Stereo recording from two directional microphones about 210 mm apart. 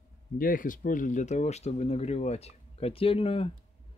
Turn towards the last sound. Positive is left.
turn(degrees=25)  # may be behind; listen again after turning